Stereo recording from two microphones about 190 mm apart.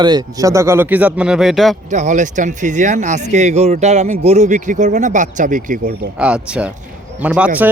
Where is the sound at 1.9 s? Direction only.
40° right (ahead or behind).